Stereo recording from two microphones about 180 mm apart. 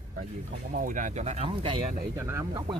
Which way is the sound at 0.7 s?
50° right (ahead or behind).